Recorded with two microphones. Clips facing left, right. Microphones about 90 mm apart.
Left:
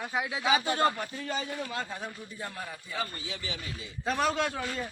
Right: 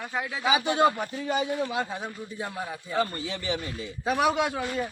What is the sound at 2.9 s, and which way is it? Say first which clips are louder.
Speech: right 9 dB; 45° right (ahead or behind).